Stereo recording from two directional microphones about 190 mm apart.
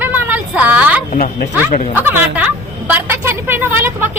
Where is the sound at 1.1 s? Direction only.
50° left (ahead or behind).